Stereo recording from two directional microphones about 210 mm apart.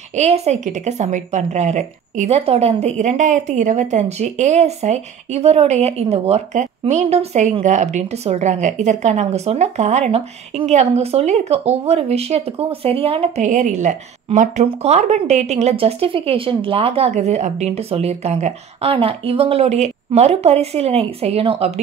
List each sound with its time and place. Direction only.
0.1 s speech: 30° right (ahead or behind)